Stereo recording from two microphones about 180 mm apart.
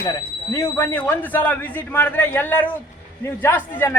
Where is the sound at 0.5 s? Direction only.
15° left (ahead or behind).